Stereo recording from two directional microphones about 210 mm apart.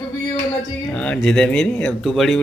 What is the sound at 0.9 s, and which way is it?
Speech, 5° left (ahead or behind).